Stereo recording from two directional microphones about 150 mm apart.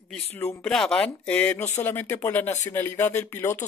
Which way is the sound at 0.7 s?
5° left (ahead or behind).